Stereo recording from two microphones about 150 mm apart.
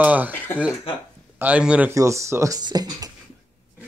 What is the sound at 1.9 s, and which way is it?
Speech, 20° right (ahead or behind).